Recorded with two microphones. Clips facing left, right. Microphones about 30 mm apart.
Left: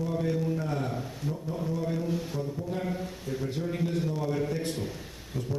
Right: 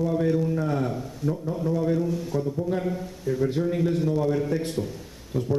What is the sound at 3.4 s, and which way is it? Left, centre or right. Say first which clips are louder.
A man's voice: right 8 dB; centre.